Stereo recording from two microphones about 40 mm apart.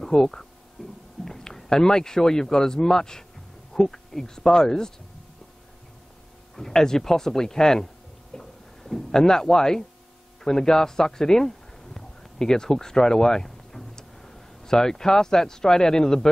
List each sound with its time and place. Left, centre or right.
0.0 s speech: centre
0.8 s a sound: centre
1.2 s speech: centre
6.5 s speech: centre